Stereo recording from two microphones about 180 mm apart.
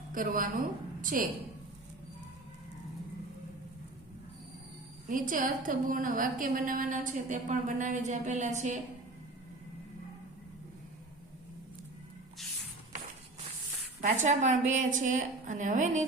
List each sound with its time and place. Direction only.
0.1 s a woman's voice: 50° right (ahead or behind)
5.0 s a woman's voice: 50° right (ahead or behind)
14.0 s a woman's voice: 45° right (ahead or behind)